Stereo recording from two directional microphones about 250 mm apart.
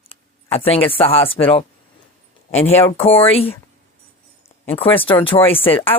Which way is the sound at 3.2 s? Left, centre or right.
Left.